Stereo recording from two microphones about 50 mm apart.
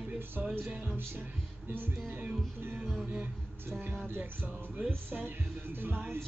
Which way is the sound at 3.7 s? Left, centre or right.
Right.